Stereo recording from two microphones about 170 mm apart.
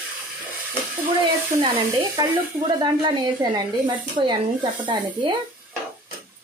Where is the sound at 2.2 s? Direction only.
25° right (ahead or behind).